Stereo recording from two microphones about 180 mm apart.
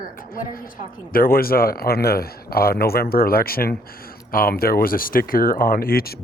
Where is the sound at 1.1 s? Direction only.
55° left (ahead or behind).